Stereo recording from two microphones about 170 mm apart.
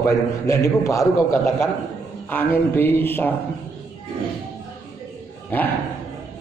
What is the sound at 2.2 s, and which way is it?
A man's voice, 10° left (ahead or behind).